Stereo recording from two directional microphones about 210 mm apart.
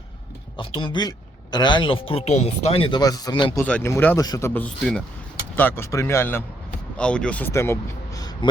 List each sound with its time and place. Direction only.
0.5 s speech: 25° left (ahead or behind)
3.6 s a man's voice: 10° left (ahead or behind)